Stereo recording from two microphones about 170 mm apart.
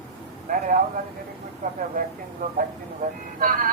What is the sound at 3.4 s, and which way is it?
Vehicle, 60° right (ahead or behind).